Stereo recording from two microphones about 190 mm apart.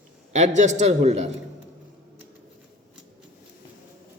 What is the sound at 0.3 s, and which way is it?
A man's voice, 40° right (ahead or behind).